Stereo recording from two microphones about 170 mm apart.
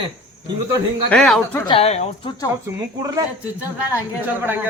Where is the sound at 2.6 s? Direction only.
20° right (ahead or behind).